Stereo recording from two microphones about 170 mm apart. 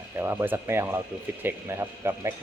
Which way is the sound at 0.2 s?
15° right (ahead or behind).